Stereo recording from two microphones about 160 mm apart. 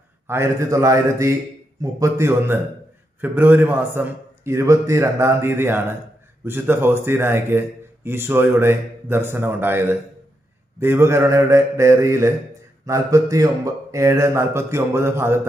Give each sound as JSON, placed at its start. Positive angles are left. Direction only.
{"t": 0.3, "sound": "a man's voice", "side_deg": -20}